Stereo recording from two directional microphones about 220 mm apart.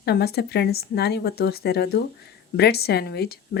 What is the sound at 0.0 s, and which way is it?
A woman's voice, 45° left (ahead or behind).